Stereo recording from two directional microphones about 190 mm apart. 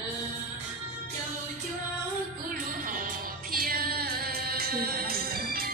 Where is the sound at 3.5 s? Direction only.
50° right (ahead or behind).